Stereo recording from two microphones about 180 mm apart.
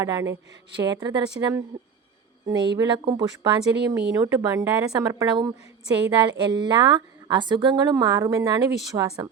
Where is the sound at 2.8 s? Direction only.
25° right (ahead or behind).